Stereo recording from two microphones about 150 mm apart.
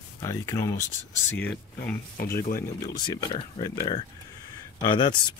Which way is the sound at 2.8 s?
25° left (ahead or behind).